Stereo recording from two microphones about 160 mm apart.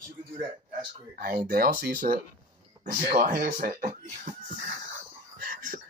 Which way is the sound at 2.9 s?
55° right (ahead or behind).